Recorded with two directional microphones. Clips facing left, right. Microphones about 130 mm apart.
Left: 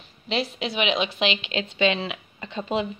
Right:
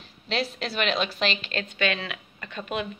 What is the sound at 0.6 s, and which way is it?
Speech, 15° left (ahead or behind).